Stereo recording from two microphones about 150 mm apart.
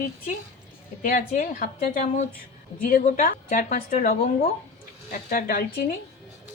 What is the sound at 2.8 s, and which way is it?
A woman's voice, 70° left (ahead or behind).